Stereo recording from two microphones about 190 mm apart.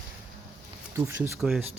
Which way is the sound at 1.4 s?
5° right (ahead or behind).